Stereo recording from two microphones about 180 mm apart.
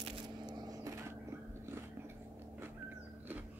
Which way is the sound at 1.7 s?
15° right (ahead or behind).